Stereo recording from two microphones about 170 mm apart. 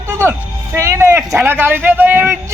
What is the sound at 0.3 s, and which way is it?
A man's voice, 15° right (ahead or behind).